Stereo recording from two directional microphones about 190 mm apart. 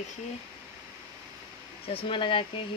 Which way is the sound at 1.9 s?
25° left (ahead or behind).